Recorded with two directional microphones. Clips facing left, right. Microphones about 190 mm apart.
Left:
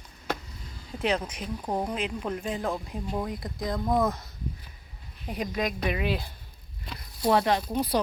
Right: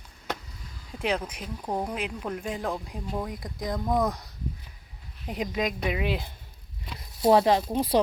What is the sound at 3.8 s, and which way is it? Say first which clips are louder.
Speech: left 1 dB; 5° left (ahead or behind).